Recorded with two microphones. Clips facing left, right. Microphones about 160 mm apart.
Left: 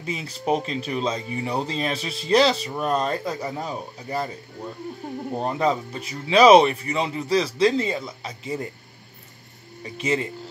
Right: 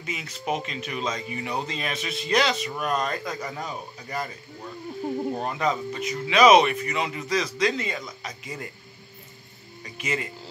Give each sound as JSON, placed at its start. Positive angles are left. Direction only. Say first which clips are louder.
{"t": 0.0, "sound": "speech", "louder": "left 5 dB", "side_deg": 30}
{"t": 5.3, "sound": "speech", "louder": "left 3 dB", "side_deg": 30}
{"t": 9.9, "sound": "speech", "louder": "left 6 dB", "side_deg": 30}